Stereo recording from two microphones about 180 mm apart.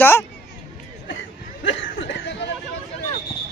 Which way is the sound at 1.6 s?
90° left.